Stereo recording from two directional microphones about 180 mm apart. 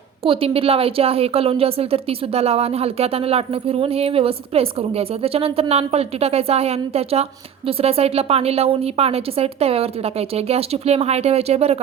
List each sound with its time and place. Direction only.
0.2 s a woman's voice: 30° right (ahead or behind)